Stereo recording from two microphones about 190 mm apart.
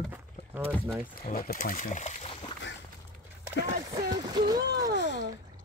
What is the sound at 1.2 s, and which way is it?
Speech, 50° left (ahead or behind).